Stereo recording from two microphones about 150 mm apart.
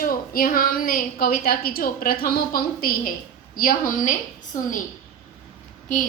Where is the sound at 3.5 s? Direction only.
65° left (ahead or behind).